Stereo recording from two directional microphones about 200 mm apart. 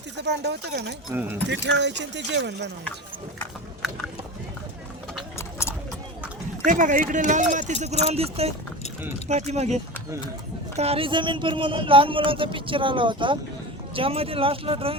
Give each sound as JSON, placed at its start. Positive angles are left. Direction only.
{"t": 0.2, "sound": "speech", "side_deg": -60}
{"t": 1.1, "sound": "speech", "side_deg": -10}
{"t": 1.5, "sound": "speech", "side_deg": -60}
{"t": 5.4, "sound": "clip-clop", "side_deg": 15}
{"t": 6.7, "sound": "speech", "side_deg": -40}